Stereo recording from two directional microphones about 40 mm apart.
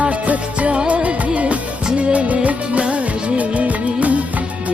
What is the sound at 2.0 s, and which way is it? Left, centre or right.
Music of bollywood, right.